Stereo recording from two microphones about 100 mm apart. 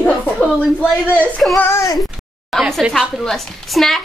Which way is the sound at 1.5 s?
25° left (ahead or behind).